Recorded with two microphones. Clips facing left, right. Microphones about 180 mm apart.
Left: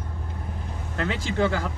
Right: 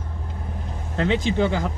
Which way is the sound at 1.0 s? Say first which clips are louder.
Right 4 dB; 25° right (ahead or behind).